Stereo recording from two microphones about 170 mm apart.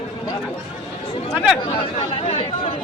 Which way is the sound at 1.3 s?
5° right (ahead or behind).